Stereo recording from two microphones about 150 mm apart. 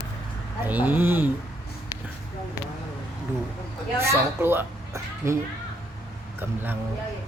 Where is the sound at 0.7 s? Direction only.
10° right (ahead or behind).